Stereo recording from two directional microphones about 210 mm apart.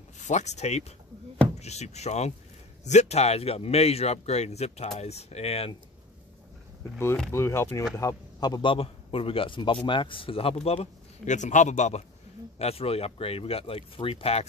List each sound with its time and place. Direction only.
0.2 s speech: 35° left (ahead or behind)
7.0 s a man's voice: 10° left (ahead or behind); by 14.4 s 25° left (ahead or behind)